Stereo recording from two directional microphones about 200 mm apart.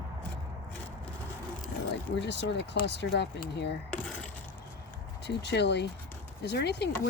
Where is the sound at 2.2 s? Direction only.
60° left (ahead or behind).